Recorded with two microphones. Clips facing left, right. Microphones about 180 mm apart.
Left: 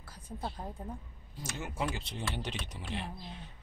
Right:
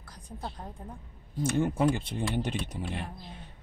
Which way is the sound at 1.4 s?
55° right (ahead or behind).